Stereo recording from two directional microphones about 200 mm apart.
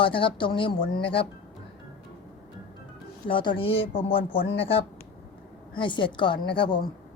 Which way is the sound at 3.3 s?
25° left (ahead or behind).